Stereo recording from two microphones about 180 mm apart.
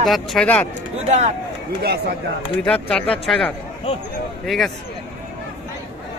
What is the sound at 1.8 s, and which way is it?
Speech, 60° right (ahead or behind).